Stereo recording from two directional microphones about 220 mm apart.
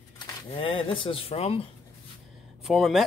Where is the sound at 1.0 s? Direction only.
25° left (ahead or behind).